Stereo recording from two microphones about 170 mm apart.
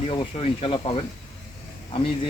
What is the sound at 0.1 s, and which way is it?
Speech, 35° left (ahead or behind).